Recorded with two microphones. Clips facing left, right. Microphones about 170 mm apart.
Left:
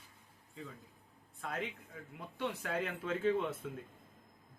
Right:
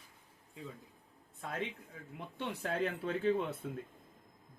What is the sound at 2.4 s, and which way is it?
Speech, 25° right (ahead or behind).